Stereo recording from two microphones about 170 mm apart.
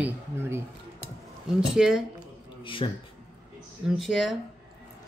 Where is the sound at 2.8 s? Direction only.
35° left (ahead or behind).